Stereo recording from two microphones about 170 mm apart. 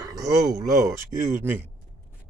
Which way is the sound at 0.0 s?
20° right (ahead or behind).